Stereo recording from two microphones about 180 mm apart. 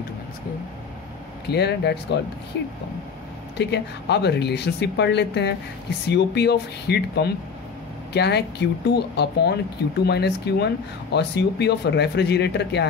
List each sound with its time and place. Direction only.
1.5 s speech: 70° left (ahead or behind)
3.5 s speech: 70° left (ahead or behind)